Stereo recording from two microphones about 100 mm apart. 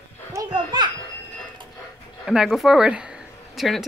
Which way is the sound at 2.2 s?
Centre (ahead or behind).